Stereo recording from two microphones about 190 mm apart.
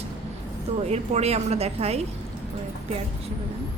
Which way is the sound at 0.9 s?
35° right (ahead or behind).